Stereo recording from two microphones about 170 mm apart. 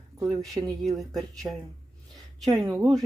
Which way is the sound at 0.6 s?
Centre (ahead or behind).